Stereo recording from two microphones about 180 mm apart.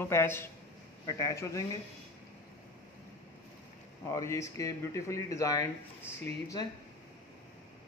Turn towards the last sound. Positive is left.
turn(degrees=20)  # may be behind; listen again after turning